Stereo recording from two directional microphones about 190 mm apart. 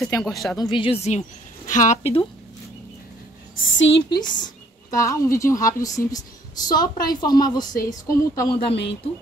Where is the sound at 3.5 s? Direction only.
85° left.